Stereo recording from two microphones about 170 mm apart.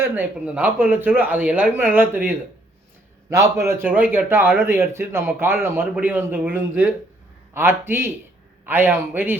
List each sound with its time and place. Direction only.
0.0 s a man's voice: 10° right (ahead or behind)